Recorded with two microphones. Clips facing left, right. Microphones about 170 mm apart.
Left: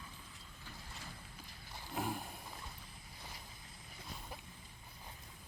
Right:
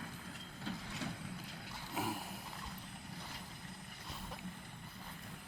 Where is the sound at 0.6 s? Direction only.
70° right (ahead or behind).